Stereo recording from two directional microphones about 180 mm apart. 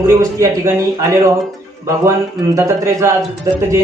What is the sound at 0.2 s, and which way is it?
Speech, 20° right (ahead or behind).